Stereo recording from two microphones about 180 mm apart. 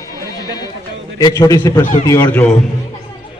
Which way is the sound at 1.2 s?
20° left (ahead or behind).